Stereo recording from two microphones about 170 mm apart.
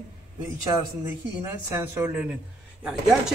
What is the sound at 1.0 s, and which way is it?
A man's voice, 15° right (ahead or behind).